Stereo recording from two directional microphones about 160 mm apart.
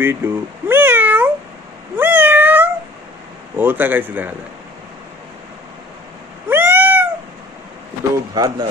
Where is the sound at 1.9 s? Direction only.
10° right (ahead or behind).